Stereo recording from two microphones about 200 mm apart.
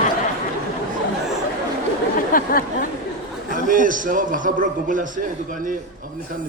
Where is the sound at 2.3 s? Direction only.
45° left (ahead or behind).